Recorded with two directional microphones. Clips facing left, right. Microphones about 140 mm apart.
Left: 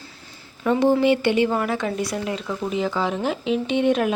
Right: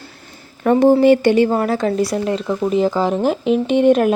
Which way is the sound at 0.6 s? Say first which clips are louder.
Right 6 dB; 50° right (ahead or behind).